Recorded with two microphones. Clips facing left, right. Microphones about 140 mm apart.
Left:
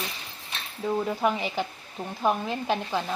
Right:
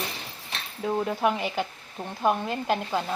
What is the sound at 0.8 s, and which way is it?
Speech, 5° right (ahead or behind).